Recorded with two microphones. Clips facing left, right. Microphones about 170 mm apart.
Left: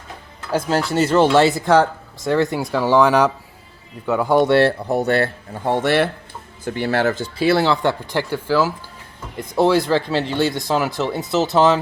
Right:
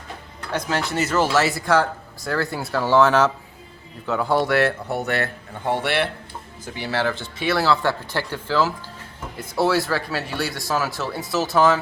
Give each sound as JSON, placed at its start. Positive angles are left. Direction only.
{"t": 0.7, "sound": "speech", "side_deg": 30}
{"t": 4.4, "sound": "speech", "side_deg": 30}